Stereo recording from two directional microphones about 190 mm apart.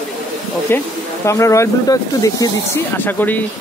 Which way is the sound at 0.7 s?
10° left (ahead or behind).